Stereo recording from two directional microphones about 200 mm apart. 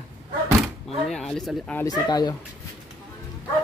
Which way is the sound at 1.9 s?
20° left (ahead or behind).